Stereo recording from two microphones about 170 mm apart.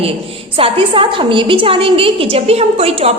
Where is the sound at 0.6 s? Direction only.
30° right (ahead or behind).